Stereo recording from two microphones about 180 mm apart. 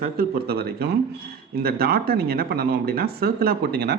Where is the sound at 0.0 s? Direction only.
60° right (ahead or behind).